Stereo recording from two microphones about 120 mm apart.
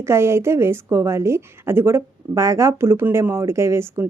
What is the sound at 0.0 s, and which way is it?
A woman's voice, 20° right (ahead or behind).